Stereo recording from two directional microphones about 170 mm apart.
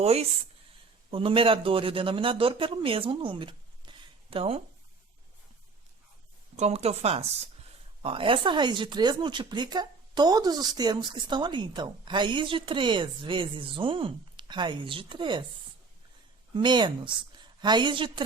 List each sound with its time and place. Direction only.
0.0 s a man's voice: 35° right (ahead or behind)
6.6 s speech: 40° right (ahead or behind)
16.6 s speech: 25° right (ahead or behind)